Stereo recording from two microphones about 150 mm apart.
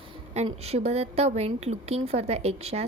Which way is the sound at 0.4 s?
45° right (ahead or behind).